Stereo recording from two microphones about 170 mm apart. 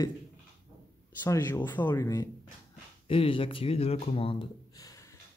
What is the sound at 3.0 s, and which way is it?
Speech, 30° left (ahead or behind).